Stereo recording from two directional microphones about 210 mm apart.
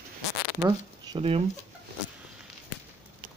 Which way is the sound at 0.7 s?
25° right (ahead or behind).